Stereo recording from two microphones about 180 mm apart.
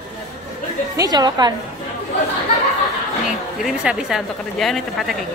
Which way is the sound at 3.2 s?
5° right (ahead or behind).